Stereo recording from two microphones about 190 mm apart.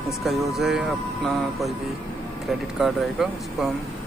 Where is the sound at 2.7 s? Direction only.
Centre (ahead or behind).